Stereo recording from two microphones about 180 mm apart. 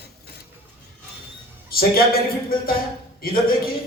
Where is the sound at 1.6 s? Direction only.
55° left (ahead or behind).